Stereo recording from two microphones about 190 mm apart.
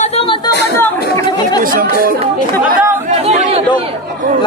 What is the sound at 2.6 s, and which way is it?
Speech, 40° right (ahead or behind).